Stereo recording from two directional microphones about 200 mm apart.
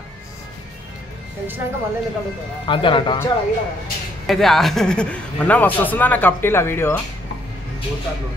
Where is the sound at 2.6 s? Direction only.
25° left (ahead or behind).